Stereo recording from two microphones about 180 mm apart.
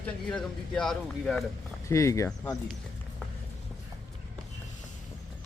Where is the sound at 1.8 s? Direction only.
15° left (ahead or behind).